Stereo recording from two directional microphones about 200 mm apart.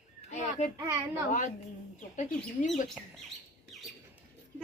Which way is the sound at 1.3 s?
40° left (ahead or behind).